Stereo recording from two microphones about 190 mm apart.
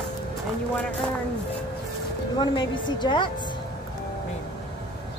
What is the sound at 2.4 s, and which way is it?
Speech, 25° left (ahead or behind).